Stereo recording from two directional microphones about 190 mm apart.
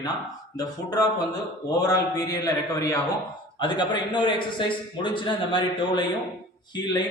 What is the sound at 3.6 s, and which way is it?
A man's voice, 25° left (ahead or behind).